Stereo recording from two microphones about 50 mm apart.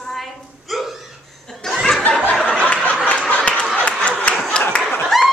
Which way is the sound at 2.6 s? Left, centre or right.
Left.